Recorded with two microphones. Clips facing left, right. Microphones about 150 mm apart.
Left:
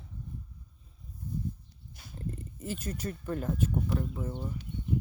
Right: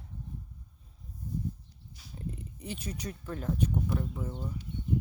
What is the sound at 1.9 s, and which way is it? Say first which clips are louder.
Wild animals: even; 55° left (ahead or behind).